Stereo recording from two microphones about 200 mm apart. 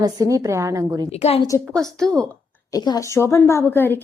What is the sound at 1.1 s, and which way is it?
Speech, 30° left (ahead or behind).